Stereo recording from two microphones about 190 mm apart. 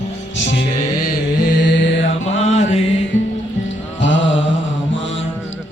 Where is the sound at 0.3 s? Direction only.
70° left (ahead or behind).